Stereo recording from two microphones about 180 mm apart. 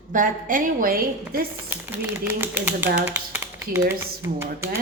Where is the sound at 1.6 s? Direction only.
10° right (ahead or behind).